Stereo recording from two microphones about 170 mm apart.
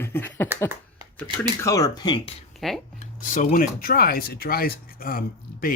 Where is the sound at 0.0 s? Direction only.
10° left (ahead or behind).